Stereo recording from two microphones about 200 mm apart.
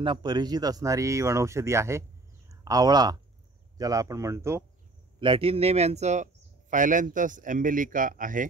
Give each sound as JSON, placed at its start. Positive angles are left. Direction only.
{"t": 0.0, "sound": "speech", "side_deg": -20}
{"t": 5.2, "sound": "speech", "side_deg": -25}